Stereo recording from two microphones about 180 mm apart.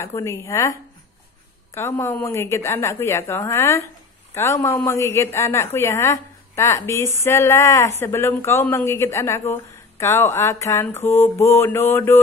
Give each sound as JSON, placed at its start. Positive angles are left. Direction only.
{"t": 0.0, "sound": "speech", "side_deg": 15}